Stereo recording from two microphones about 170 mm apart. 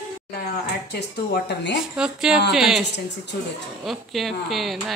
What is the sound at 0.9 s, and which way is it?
Speech, 75° left (ahead or behind).